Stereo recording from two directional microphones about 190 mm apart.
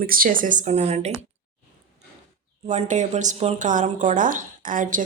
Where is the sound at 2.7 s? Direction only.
40° right (ahead or behind).